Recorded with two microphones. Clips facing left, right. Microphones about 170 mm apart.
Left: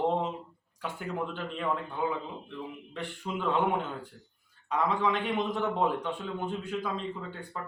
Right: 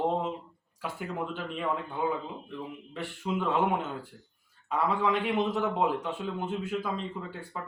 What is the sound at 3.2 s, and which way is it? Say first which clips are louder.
Speech: right 5 dB; 10° right (ahead or behind).